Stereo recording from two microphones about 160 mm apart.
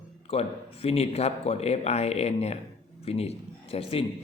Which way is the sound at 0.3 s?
40° left (ahead or behind).